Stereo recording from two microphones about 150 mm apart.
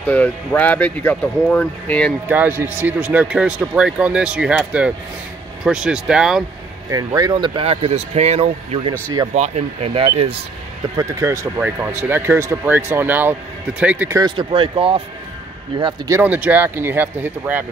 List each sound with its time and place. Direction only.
0.0 s speech: 10° left (ahead or behind)
2.2 s speech: 10° right (ahead or behind)
6.9 s speech: 25° right (ahead or behind); by 8.9 s 40° right (ahead or behind)
8.9 s speech: 20° right (ahead or behind)
9.3 s speech: 45° right (ahead or behind)
11.0 s speech: 20° right (ahead or behind)
14.2 s speech: 35° right (ahead or behind)
16.1 s speech: 10° right (ahead or behind)